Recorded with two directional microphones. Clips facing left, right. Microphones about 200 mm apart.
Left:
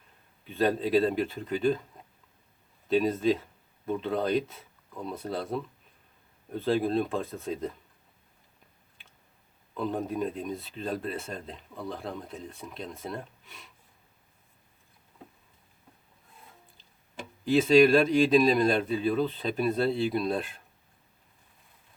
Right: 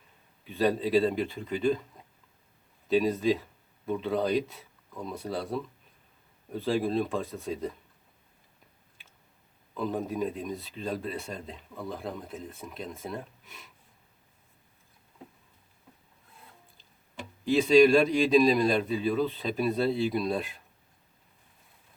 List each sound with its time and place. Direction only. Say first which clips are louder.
0.4 s speech: even; centre (ahead or behind)
2.9 s speech: even; centre (ahead or behind)
9.7 s speech: even; centre (ahead or behind)
17.4 s speech: even; centre (ahead or behind)